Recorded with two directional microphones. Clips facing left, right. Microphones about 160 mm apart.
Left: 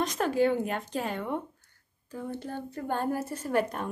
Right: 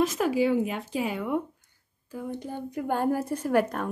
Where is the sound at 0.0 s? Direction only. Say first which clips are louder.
Right 2 dB; 5° right (ahead or behind).